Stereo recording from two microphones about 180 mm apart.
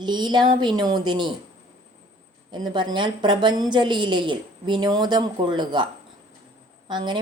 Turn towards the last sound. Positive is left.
turn(degrees=-25)  # may be behind; listen again after turning